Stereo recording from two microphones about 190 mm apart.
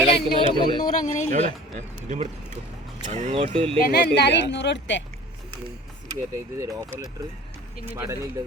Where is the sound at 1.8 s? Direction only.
35° right (ahead or behind).